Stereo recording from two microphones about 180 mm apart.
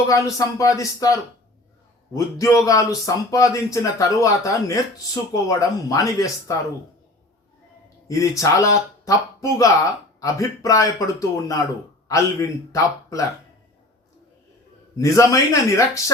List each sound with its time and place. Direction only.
0.1 s a man's voice: 20° left (ahead or behind)
8.0 s a man's voice: 15° left (ahead or behind)
14.9 s speech: 15° left (ahead or behind)